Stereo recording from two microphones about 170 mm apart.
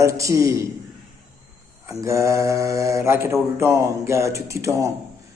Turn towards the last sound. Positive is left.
turn(degrees=-20)  # may be behind; listen again after turning